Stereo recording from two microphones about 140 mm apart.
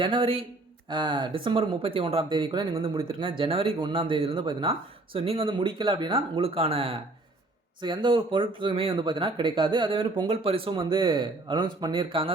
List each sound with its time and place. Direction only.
0.0 s speech: 40° right (ahead or behind)